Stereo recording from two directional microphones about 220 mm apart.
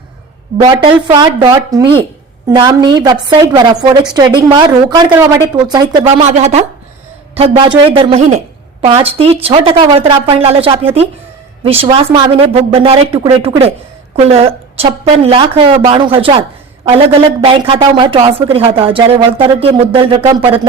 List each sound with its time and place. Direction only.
0.6 s speech: 20° right (ahead or behind)